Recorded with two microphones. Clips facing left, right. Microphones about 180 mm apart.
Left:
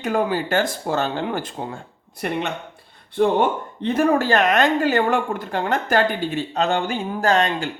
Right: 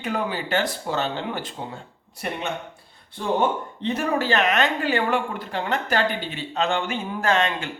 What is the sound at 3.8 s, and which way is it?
Speech, 50° left (ahead or behind).